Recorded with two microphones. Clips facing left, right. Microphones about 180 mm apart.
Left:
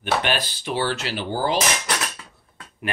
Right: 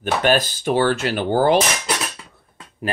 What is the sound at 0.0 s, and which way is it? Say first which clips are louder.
Speech: right 5 dB; 45° right (ahead or behind).